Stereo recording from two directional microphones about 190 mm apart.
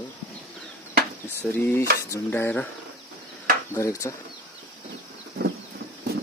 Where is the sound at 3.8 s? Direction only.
15° left (ahead or behind).